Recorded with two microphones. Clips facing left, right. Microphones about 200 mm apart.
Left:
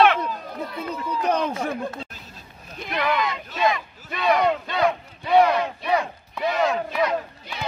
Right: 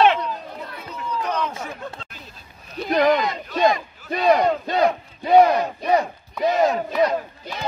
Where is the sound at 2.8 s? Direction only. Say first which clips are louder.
Right 6 dB; 40° right (ahead or behind).